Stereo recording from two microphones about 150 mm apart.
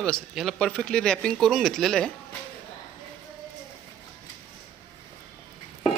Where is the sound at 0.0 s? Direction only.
Centre (ahead or behind).